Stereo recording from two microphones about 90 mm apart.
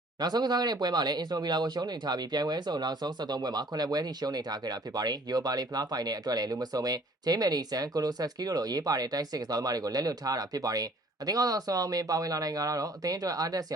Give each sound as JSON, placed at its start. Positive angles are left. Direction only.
{"t": 0.2, "sound": "speech", "side_deg": -50}